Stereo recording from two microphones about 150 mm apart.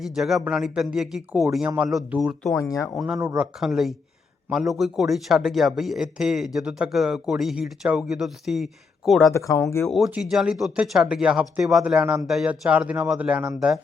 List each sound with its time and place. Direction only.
0.0 s speech: centre (ahead or behind)
2.6 s speech: 20° left (ahead or behind)
2.9 s speech: 5° right (ahead or behind)
3.2 s speech: 20° right (ahead or behind)
3.4 s speech: centre (ahead or behind)
9.3 s speech: 20° left (ahead or behind)
9.8 s speech: centre (ahead or behind)